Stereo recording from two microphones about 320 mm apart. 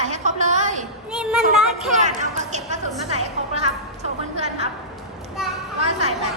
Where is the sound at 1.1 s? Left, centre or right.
Centre.